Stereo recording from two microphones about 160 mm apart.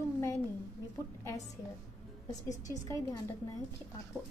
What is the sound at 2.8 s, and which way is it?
Speech, 20° left (ahead or behind).